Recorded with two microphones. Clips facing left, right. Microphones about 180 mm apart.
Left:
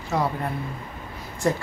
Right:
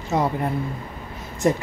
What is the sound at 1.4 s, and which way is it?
Speech, 20° right (ahead or behind).